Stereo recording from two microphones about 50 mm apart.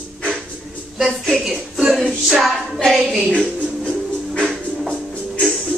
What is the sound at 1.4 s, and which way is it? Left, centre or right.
Music, centre.